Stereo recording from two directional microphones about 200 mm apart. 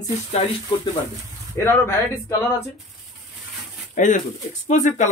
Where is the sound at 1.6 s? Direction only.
15° left (ahead or behind).